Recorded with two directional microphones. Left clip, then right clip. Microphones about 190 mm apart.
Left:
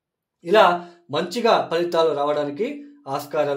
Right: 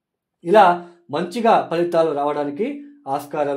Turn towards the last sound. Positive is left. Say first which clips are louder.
# right 1 dB
turn(degrees=-40)  # may be behind; listen again after turning